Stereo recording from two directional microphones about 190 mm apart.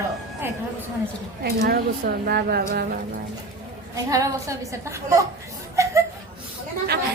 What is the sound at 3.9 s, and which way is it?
A woman's voice, 15° right (ahead or behind).